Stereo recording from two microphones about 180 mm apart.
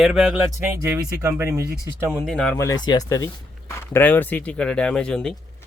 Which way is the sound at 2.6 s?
20° left (ahead or behind).